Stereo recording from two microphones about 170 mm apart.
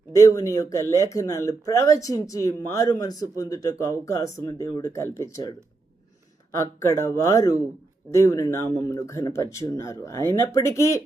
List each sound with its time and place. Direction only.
0.2 s speech: 20° left (ahead or behind)
6.6 s speech: 15° left (ahead or behind)